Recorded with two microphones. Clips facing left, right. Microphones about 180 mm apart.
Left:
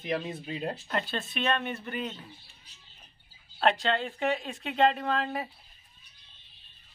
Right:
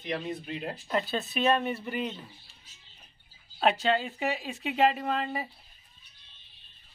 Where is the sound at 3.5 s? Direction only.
5° right (ahead or behind).